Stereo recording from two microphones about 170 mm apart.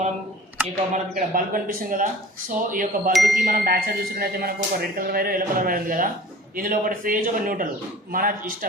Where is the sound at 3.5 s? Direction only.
65° right (ahead or behind).